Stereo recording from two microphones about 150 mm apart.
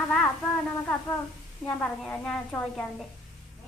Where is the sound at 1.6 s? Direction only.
5° left (ahead or behind).